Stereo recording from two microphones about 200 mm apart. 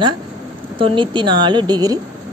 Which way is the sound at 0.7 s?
25° right (ahead or behind).